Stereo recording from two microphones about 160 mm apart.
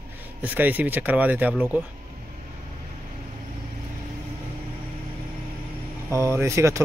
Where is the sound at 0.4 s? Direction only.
10° right (ahead or behind).